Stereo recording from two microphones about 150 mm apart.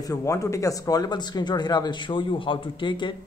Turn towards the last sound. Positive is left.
turn(degrees=30)  # may be behind; listen again after turning